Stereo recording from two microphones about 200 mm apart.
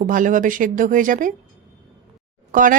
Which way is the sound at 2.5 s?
40° right (ahead or behind).